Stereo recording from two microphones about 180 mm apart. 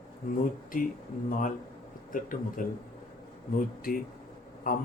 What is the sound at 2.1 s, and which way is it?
Mantra, 50° left (ahead or behind).